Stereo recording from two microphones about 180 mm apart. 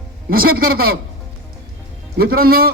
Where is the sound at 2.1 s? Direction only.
55° right (ahead or behind).